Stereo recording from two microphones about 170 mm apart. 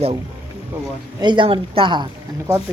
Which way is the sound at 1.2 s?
30° right (ahead or behind).